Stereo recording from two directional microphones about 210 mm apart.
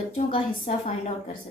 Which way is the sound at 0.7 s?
30° left (ahead or behind).